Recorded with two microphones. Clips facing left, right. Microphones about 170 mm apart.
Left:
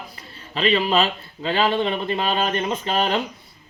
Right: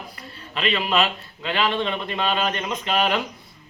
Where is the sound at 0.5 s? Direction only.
35° left (ahead or behind).